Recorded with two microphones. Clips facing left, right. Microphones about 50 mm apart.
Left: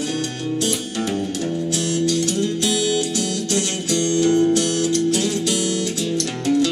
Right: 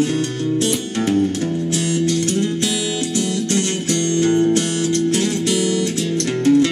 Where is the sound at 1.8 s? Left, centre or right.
Right.